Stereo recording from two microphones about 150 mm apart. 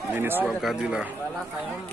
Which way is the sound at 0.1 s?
15° right (ahead or behind).